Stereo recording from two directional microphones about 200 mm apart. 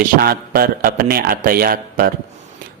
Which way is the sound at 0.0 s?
50° right (ahead or behind).